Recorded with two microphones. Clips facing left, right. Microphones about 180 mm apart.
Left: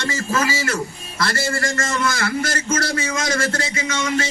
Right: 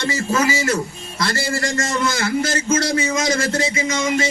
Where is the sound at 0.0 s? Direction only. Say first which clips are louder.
Right 3 dB; 20° right (ahead or behind).